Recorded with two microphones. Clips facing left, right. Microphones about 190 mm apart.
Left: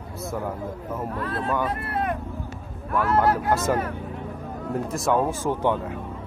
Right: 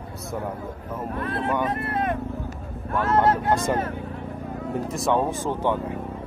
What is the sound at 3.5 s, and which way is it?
Speech, 5° left (ahead or behind).